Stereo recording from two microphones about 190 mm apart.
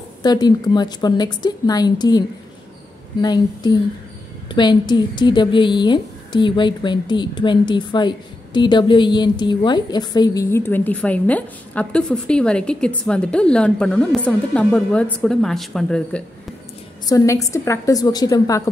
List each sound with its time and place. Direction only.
0.2 s a woman's voice: 20° left (ahead or behind); by 16.2 s 5° left (ahead or behind)
17.1 s a woman's voice: 15° left (ahead or behind)